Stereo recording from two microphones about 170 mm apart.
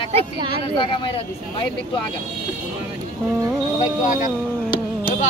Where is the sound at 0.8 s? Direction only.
30° left (ahead or behind).